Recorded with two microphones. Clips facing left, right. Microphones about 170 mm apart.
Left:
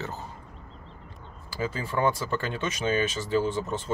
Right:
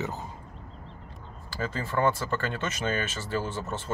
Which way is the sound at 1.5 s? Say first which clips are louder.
Left 1 dB; 10° left (ahead or behind).